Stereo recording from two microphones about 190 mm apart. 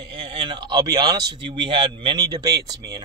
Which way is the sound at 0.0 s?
30° right (ahead or behind).